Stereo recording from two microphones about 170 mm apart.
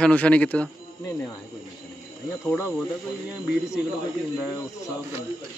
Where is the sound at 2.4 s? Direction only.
15° left (ahead or behind).